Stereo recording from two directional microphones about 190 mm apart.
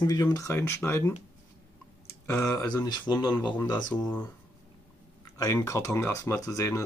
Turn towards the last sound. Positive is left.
turn(degrees=15)  # may be behind; listen again after turning